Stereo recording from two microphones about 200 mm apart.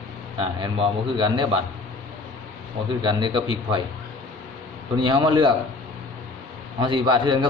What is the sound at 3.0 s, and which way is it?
Speech, 25° right (ahead or behind).